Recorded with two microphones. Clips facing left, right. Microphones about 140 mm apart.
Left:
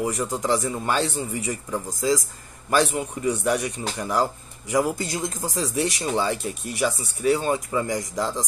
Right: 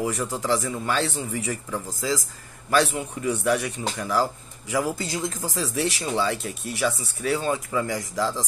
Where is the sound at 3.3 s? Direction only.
15° left (ahead or behind).